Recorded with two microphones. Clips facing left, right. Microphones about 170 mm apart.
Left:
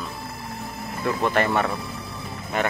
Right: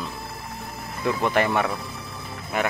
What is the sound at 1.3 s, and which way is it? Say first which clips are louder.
Speech: even; 10° right (ahead or behind).